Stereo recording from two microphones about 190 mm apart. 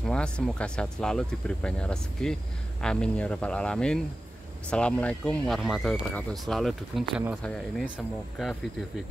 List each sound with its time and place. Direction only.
0.0 s speech: 5° left (ahead or behind)